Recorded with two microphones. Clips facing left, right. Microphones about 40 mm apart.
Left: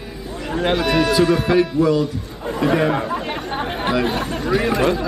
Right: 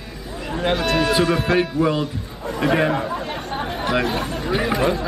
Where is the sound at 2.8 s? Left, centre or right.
Centre.